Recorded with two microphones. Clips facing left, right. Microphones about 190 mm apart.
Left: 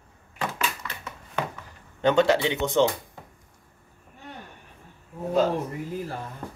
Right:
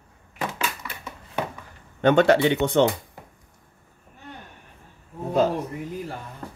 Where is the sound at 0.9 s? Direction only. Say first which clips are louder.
Right 1 dB; 10° right (ahead or behind).